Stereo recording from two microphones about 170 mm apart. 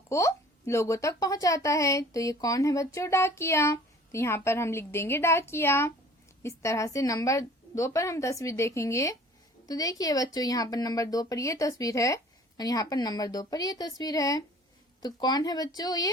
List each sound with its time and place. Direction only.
0.1 s speech: 15° left (ahead or behind)